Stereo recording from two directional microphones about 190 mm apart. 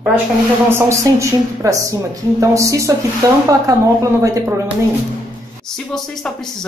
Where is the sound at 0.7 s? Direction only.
15° right (ahead or behind).